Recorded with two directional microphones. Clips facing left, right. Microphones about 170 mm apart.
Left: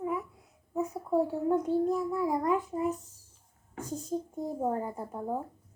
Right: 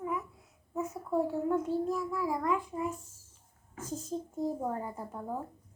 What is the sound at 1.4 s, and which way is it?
A child's voice, 20° left (ahead or behind).